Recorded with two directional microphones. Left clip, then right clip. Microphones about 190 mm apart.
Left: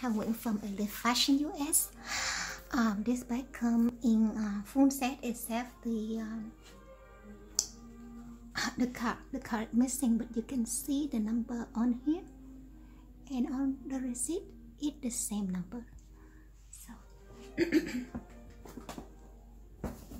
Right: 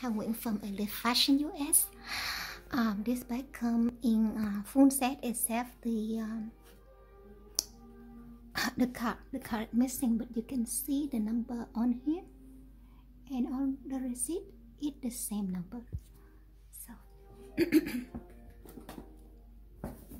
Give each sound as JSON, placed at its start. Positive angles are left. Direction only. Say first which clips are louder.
{"t": 0.0, "sound": "speech", "louder": "left 1 dB", "side_deg": -5}
{"t": 8.5, "sound": "speech", "louder": "right 2 dB", "side_deg": -35}
{"t": 13.3, "sound": "speech", "louder": "even", "side_deg": -15}
{"t": 17.6, "sound": "a sound", "louder": "right 2 dB", "side_deg": -50}